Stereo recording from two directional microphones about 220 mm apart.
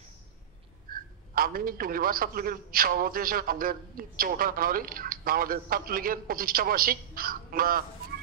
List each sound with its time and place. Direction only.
0.8 s a man's voice: 40° right (ahead or behind)